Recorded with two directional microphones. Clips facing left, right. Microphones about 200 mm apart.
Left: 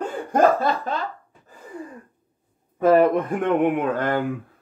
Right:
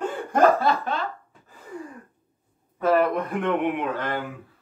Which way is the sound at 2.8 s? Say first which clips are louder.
Left 5 dB; 50° left (ahead or behind).